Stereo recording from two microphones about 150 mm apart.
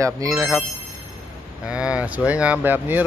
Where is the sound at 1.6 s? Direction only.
5° right (ahead or behind).